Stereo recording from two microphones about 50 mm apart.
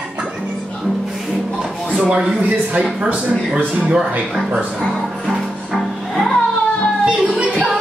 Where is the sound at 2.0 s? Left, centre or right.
Right.